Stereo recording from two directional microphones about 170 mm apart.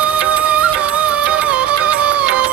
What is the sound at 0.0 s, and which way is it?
Music, 10° right (ahead or behind).